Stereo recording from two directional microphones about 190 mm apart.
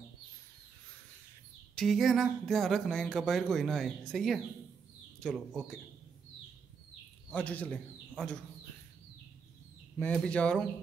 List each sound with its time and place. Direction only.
1.8 s speech: centre (ahead or behind)
7.2 s speech: 10° left (ahead or behind)
9.9 s speech: 5° left (ahead or behind)